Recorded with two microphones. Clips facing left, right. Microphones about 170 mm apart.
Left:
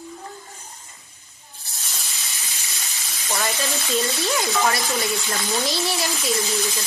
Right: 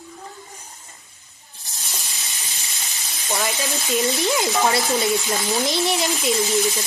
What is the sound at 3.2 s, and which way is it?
Sizzle, 10° right (ahead or behind).